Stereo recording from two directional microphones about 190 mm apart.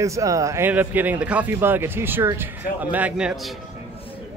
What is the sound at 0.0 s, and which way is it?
Speech, 15° right (ahead or behind).